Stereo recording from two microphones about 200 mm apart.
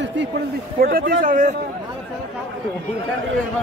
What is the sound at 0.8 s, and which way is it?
Speech, 45° right (ahead or behind).